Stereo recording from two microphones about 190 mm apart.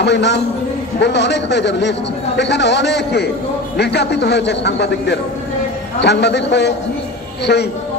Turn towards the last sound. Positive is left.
turn(degrees=60)  # may be behind; listen again after turning